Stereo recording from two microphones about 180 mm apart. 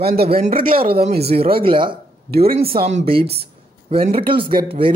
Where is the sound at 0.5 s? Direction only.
55° right (ahead or behind).